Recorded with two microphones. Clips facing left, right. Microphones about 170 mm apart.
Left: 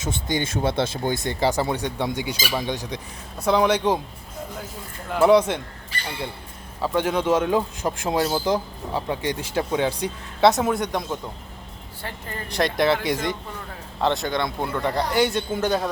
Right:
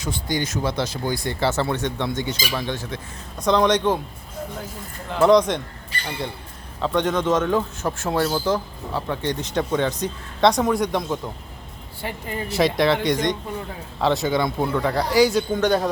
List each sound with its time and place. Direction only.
0.0 s a man's voice: 20° left (ahead or behind)
5.1 s a man's voice: 5° left (ahead or behind)
6.8 s a man's voice: 5° left (ahead or behind)
12.0 s speech: 15° right (ahead or behind)
12.5 s speech: 5° right (ahead or behind)